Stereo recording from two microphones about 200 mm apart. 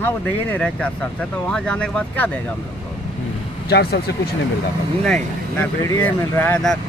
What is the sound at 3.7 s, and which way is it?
Speech, 55° left (ahead or behind).